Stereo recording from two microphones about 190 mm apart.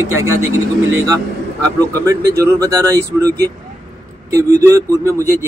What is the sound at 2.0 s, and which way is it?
Speech, 15° right (ahead or behind).